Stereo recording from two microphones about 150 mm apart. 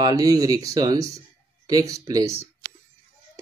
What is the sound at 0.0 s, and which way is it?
Speech, 25° right (ahead or behind).